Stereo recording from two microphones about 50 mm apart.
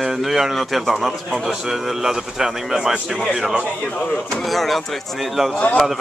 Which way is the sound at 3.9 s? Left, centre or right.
Centre.